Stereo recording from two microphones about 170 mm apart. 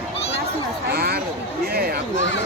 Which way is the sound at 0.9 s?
65° right (ahead or behind).